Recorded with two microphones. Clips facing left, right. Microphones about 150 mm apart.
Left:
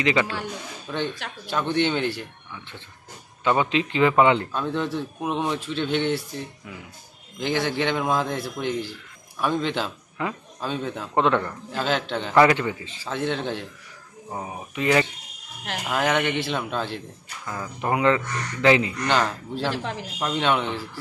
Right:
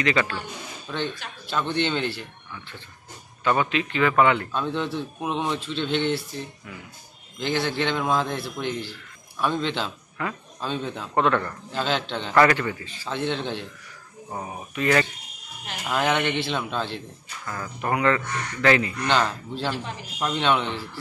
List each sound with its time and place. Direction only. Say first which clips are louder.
0.0 s a man's voice: left 1 dB; 15° left (ahead or behind)
3.4 s a man's voice: left 1 dB; 20° left (ahead or behind)
4.5 s a man's voice: left 1 dB; 5° left (ahead or behind)
11.1 s a man's voice: left 1 dB; 20° left (ahead or behind)
11.7 s a man's voice: left 1 dB; 5° left (ahead or behind)
13.0 s a man's voice: left 1 dB; 5° left (ahead or behind)
19.0 s a man's voice: right 2 dB; 5° left (ahead or behind)
19.8 s speech: left 4 dB; 75° left (ahead or behind)
20.2 s a man's voice: even; 5° left (ahead or behind)